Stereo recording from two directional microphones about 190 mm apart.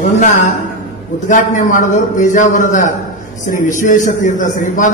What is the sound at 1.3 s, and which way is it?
A man's voice, 45° left (ahead or behind).